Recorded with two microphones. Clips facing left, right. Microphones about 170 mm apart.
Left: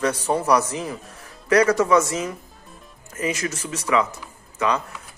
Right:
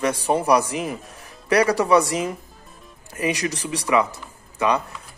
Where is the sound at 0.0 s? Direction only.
15° right (ahead or behind).